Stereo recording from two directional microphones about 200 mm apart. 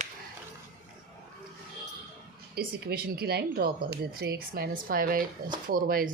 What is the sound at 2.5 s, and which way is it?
Speech, 50° right (ahead or behind).